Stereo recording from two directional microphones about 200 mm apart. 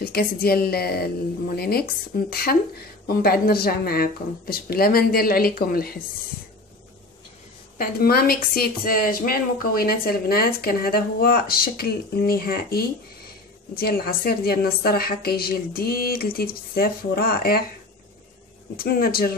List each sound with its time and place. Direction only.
0.0 s a woman's voice: 50° left (ahead or behind)
7.7 s a woman's voice: 45° left (ahead or behind)
18.8 s a woman's voice: 50° left (ahead or behind)